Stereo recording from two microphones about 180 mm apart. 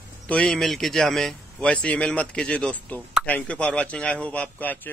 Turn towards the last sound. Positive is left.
turn(degrees=10)  # may be behind; listen again after turning